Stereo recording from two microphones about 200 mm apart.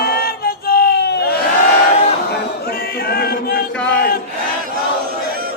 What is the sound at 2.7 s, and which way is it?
Chant, 50° left (ahead or behind).